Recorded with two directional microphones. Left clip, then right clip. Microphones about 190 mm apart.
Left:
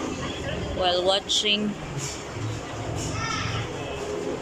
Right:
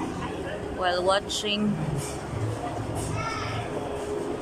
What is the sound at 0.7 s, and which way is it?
Speech, centre (ahead or behind).